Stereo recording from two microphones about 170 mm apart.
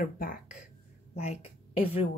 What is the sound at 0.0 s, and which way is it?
Speech, 55° left (ahead or behind).